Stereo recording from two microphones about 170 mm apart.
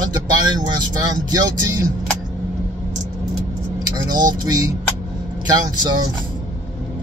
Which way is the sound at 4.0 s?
25° right (ahead or behind).